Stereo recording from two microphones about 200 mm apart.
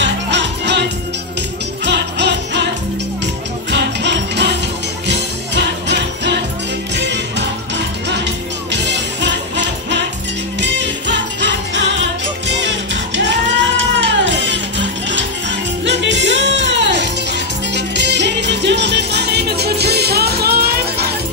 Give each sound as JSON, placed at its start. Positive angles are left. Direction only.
{"t": 0.0, "sound": "music", "side_deg": -60}
{"t": 1.9, "sound": "music", "side_deg": -60}
{"t": 3.7, "sound": "music", "side_deg": -60}